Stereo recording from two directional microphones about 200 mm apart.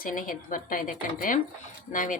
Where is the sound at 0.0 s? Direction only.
45° left (ahead or behind).